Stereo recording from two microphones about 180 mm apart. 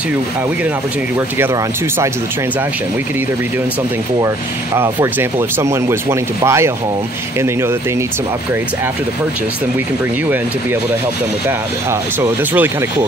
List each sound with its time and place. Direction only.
1.4 s speech: 15° right (ahead or behind)
4.7 s speech: 15° right (ahead or behind)
12.2 s speech: 10° right (ahead or behind)